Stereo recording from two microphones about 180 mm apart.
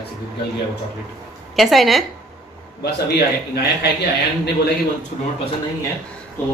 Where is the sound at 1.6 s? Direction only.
Centre (ahead or behind).